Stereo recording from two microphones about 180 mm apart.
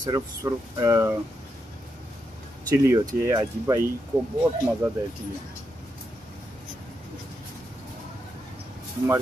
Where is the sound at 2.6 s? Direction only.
15° right (ahead or behind).